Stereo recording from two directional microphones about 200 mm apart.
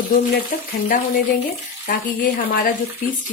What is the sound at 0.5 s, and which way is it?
Frying, 40° left (ahead or behind).